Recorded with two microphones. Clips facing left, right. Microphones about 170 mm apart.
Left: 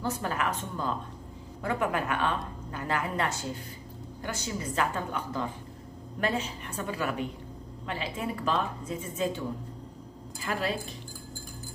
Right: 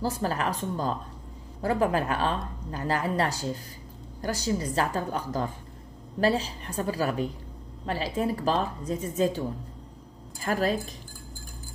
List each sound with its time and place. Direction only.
0.0 s a woman's voice: 35° right (ahead or behind)
10.4 s speech: 40° right (ahead or behind)